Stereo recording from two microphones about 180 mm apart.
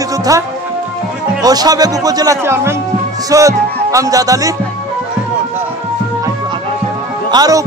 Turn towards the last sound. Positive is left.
turn(degrees=-20)  # may be behind; listen again after turning